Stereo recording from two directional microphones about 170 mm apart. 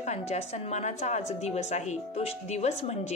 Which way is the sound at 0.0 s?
40° left (ahead or behind).